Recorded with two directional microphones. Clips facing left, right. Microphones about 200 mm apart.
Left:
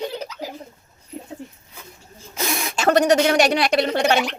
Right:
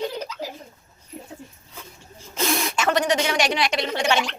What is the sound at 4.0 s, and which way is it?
Speech, 35° left (ahead or behind).